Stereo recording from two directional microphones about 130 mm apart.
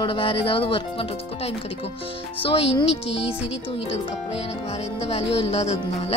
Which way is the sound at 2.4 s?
45° left (ahead or behind).